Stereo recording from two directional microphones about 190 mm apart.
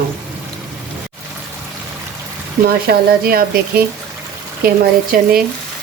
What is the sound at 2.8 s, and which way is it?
Speech, 50° right (ahead or behind).